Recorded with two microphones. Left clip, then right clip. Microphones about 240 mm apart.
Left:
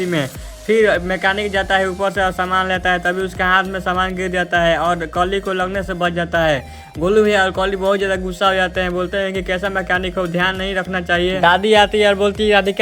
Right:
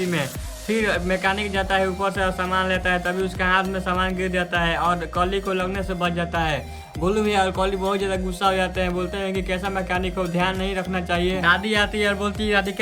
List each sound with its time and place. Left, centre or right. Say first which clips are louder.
0.7 s speech: left 8 dB; centre